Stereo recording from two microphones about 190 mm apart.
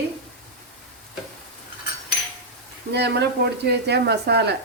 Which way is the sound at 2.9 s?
60° right (ahead or behind).